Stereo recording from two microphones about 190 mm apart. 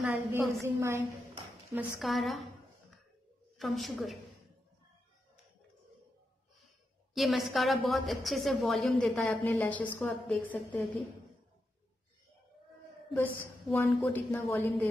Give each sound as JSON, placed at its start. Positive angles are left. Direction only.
{"t": 0.3, "sound": "a woman's voice", "side_deg": -10}
{"t": 3.5, "sound": "a woman's voice", "side_deg": 0}
{"t": 7.2, "sound": "a woman's voice", "side_deg": 0}
{"t": 13.1, "sound": "a woman's voice", "side_deg": 10}